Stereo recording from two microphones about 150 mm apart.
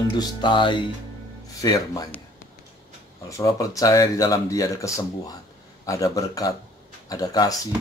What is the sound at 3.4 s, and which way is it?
Speech, 20° left (ahead or behind).